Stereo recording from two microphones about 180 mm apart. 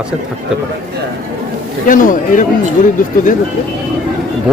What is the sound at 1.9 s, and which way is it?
Speech, 45° left (ahead or behind).